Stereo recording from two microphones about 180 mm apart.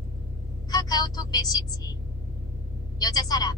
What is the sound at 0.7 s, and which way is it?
Speech, 20° left (ahead or behind).